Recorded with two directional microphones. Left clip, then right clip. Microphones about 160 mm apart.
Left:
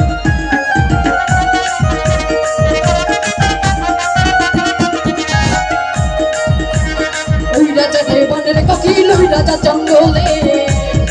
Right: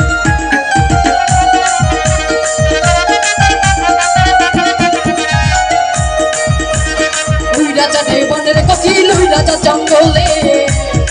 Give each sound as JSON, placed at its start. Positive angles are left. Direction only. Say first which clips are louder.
{"t": 0.7, "sound": "music", "louder": "right 3 dB", "side_deg": 30}
{"t": 3.1, "sound": "music", "louder": "right 4 dB", "side_deg": 25}
{"t": 7.5, "sound": "music", "louder": "left 1 dB", "side_deg": 45}